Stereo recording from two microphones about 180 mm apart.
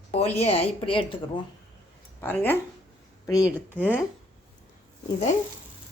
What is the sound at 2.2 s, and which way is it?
Speech, 10° left (ahead or behind).